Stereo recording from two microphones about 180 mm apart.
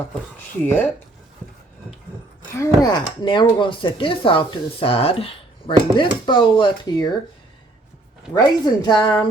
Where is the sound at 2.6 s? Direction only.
25° left (ahead or behind).